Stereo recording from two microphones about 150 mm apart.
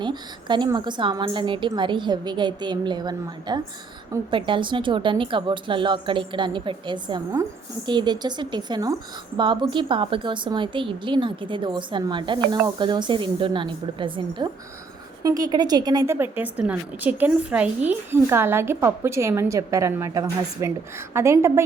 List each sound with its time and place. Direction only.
0.0 s a woman's voice: 30° right (ahead or behind)